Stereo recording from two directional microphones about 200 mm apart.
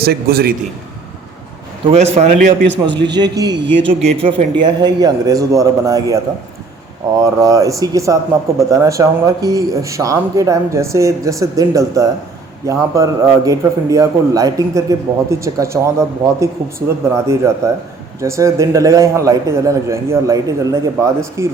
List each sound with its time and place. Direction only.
0.0 s a man's voice: 50° right (ahead or behind)
1.9 s a man's voice: 30° right (ahead or behind)
2.6 s a man's voice: 60° right (ahead or behind)
3.2 s speech: 20° right (ahead or behind)
4.0 s a man's voice: 30° right (ahead or behind)
7.2 s a man's voice: 15° right (ahead or behind)